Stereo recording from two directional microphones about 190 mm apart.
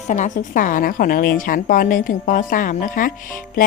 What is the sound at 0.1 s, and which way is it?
A woman's voice, 40° left (ahead or behind).